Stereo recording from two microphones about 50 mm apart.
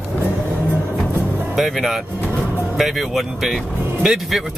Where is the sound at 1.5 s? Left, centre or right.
Centre.